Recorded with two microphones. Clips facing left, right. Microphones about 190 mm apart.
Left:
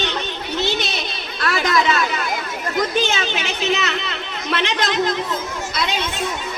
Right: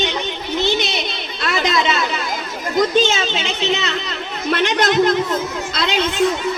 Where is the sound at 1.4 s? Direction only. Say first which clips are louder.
Even; 20° right (ahead or behind).